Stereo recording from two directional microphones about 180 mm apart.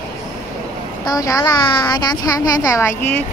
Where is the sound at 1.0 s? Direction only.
20° left (ahead or behind).